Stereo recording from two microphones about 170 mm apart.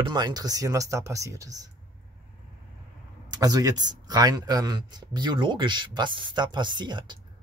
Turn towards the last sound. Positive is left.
turn(degrees=-25)  # may be behind; listen again after turning